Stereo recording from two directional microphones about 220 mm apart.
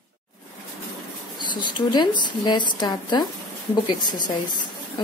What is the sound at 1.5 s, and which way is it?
Speech, 20° left (ahead or behind).